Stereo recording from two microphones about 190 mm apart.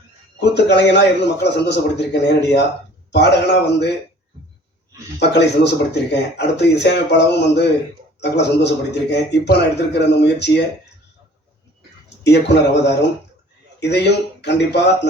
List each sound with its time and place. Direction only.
0.3 s a man's voice: 60° left (ahead or behind)
5.9 s a man's voice: 60° left (ahead or behind)
12.2 s a man's voice: 65° left (ahead or behind)